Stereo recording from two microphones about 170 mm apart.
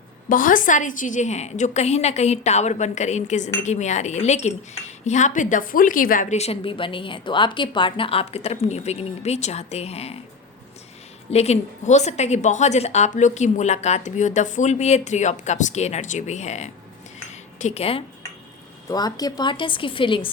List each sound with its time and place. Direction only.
0.3 s a woman's voice: 55° left (ahead or behind); by 10.2 s 35° left (ahead or behind)
11.3 s a woman's voice: 40° left (ahead or behind)
17.2 s a sound: 45° left (ahead or behind)
18.9 s a woman's voice: 20° left (ahead or behind)